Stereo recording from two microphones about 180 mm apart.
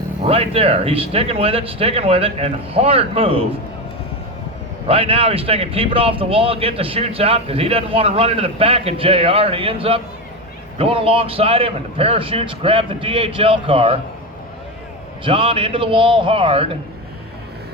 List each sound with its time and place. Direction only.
0.2 s speech: 30° right (ahead or behind)
4.9 s speech: 30° right (ahead or behind)
15.2 s a man's voice: 30° right (ahead or behind)